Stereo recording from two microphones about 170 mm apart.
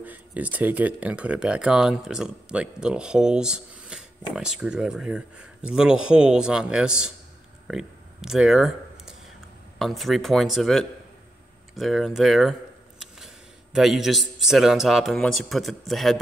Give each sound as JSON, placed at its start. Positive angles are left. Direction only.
{"t": 0.0, "sound": "speech", "side_deg": -10}
{"t": 7.6, "sound": "a sound", "side_deg": -5}
{"t": 9.8, "sound": "speech", "side_deg": 0}
{"t": 13.7, "sound": "speech", "side_deg": 0}